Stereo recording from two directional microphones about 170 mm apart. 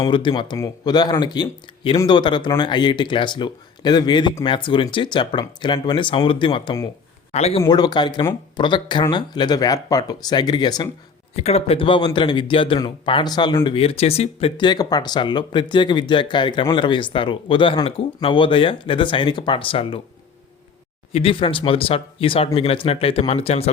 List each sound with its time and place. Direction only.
0.0 s speech: 30° left (ahead or behind)
7.6 s speech: 25° left (ahead or behind)
11.3 s speech: 35° left (ahead or behind)
13.7 s speech: 35° left (ahead or behind)
21.1 s speech: 35° left (ahead or behind)